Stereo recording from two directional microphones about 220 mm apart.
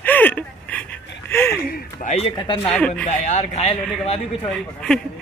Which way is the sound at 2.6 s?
5° left (ahead or behind).